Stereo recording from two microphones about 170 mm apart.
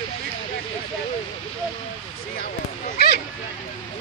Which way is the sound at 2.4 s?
60° left (ahead or behind).